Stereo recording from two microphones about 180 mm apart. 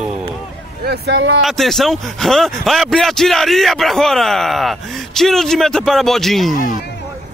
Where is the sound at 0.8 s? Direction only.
70° right (ahead or behind).